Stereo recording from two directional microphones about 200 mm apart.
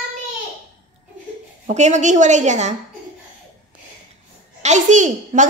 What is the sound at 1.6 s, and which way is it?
A woman's voice, 35° right (ahead or behind).